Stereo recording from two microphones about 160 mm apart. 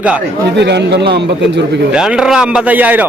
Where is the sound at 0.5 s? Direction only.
90° right.